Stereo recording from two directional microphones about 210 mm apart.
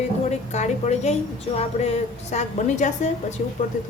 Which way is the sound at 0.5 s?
35° left (ahead or behind).